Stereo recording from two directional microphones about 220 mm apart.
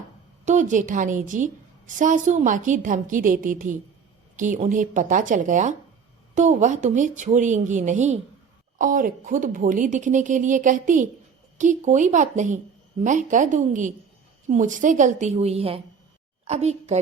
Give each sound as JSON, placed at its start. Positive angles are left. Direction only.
{"t": 0.4, "sound": "speech", "side_deg": -35}